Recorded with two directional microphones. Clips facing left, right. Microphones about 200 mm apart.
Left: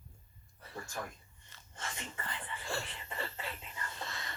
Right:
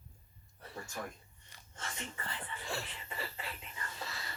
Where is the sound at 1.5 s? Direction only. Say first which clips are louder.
Even; 15° right (ahead or behind).